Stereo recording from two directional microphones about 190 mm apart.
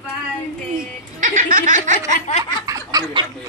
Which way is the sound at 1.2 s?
40° right (ahead or behind).